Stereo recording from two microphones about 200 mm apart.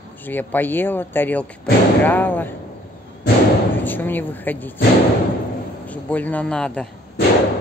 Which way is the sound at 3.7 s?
10° left (ahead or behind).